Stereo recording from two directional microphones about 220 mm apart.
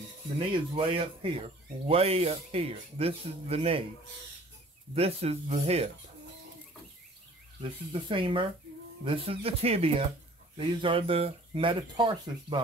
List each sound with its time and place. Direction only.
0.4 s speech: 25° right (ahead or behind)
4.9 s speech: 30° right (ahead or behind)
7.6 s speech: 25° right (ahead or behind)